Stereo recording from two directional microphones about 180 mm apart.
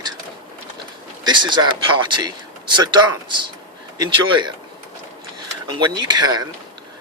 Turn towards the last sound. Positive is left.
turn(degrees=-20)  # may be behind; listen again after turning